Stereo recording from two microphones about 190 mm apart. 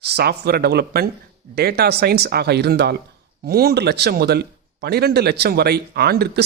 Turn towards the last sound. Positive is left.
turn(degrees=-55)  # may be behind; listen again after turning